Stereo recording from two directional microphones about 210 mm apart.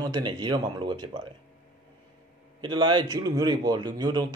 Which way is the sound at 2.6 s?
20° right (ahead or behind).